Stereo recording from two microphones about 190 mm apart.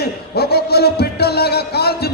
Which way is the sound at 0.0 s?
55° left (ahead or behind).